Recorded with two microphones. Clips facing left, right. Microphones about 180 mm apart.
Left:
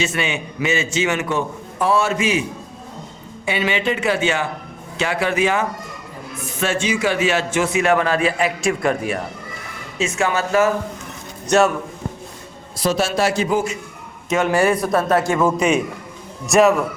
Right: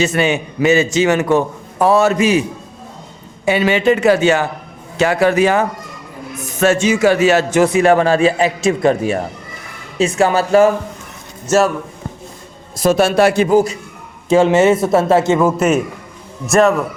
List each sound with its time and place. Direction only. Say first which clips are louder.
0.0 s a man's voice: right 7 dB; 40° right (ahead or behind)
3.4 s a man's voice: right 7 dB; 40° right (ahead or behind); by 9.1 s 25° right (ahead or behind)
10.0 s a man's voice: right 6 dB; 35° right (ahead or behind)
11.4 s a man's voice: right 2 dB; centre (ahead or behind)
12.7 s a man's voice: right 7 dB; 50° right (ahead or behind)
13.5 s a man's voice: right 7 dB; 40° right (ahead or behind)
14.3 s speech: right 6 dB; 30° right (ahead or behind)
15.4 s a man's voice: right 3 dB; 5° right (ahead or behind)